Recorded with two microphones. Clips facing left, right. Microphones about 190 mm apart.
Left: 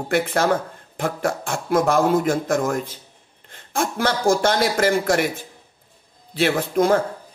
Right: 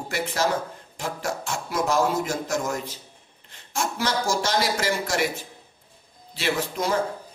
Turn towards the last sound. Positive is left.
turn(degrees=55)  # may be behind; listen again after turning